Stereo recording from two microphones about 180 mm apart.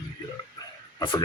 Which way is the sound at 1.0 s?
25° left (ahead or behind).